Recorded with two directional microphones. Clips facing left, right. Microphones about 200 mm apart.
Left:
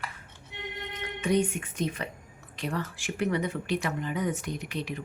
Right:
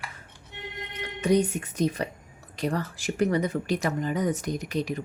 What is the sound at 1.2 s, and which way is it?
A woman's voice, 40° right (ahead or behind).